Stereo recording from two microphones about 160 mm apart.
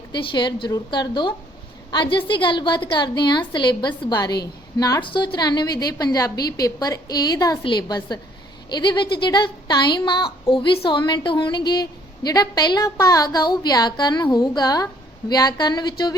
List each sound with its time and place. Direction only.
0.1 s speech: 30° left (ahead or behind)